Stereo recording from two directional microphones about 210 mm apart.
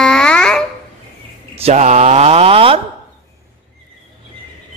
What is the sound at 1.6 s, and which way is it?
Speech, 30° right (ahead or behind).